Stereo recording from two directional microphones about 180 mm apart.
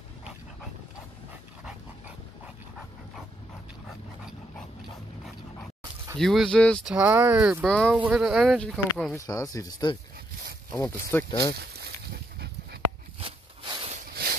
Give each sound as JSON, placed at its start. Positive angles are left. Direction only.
{"t": 1.6, "sound": "dog", "side_deg": -5}
{"t": 6.1, "sound": "speech", "side_deg": 0}
{"t": 9.1, "sound": "speech", "side_deg": 15}
{"t": 13.2, "sound": "a sound", "side_deg": -35}